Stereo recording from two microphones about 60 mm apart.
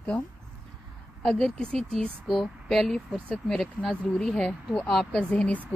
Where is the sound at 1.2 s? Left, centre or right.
Centre.